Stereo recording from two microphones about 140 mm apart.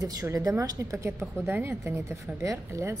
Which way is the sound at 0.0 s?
25° right (ahead or behind).